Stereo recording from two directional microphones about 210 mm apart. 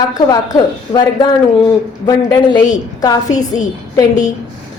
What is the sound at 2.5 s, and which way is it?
Speech, 20° left (ahead or behind).